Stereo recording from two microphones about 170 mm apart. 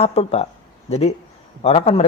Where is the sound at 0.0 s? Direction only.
35° left (ahead or behind).